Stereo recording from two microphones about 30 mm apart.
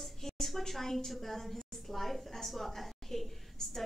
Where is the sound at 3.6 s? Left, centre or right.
Left.